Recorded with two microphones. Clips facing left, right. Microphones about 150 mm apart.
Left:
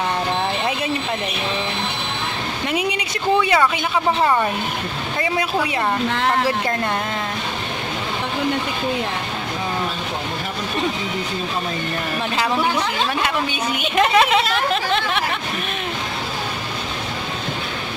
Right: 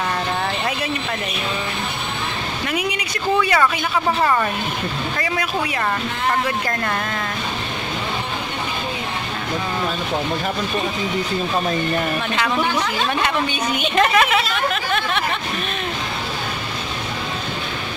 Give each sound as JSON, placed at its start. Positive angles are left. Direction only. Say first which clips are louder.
{"t": 2.7, "sound": "a woman's voice", "louder": "left 2 dB", "side_deg": 25}
{"t": 13.2, "sound": "a woman's voice", "louder": "right 1 dB", "side_deg": 5}
{"t": 14.1, "sound": "speech", "louder": "left 2 dB", "side_deg": 20}
{"t": 14.5, "sound": "a sound", "louder": "left 2 dB", "side_deg": 30}